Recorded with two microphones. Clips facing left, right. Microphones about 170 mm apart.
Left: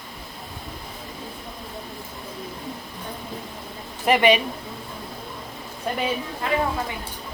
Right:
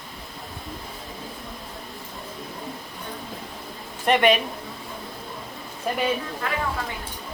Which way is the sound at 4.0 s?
Centre (ahead or behind).